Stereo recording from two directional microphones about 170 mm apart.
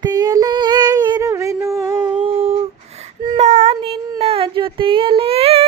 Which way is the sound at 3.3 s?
40° right (ahead or behind).